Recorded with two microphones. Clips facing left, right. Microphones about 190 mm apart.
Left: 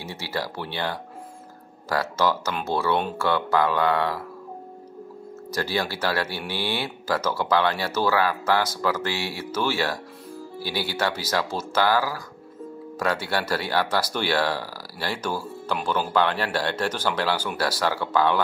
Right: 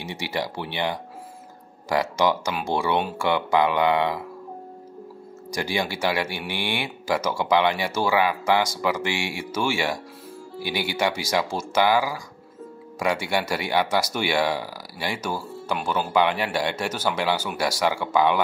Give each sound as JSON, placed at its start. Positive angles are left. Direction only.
{"t": 0.0, "sound": "speech", "side_deg": -15}
{"t": 3.3, "sound": "speech", "side_deg": -15}
{"t": 5.5, "sound": "speech", "side_deg": -15}